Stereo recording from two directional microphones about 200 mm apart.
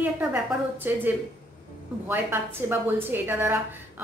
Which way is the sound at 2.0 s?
10° right (ahead or behind).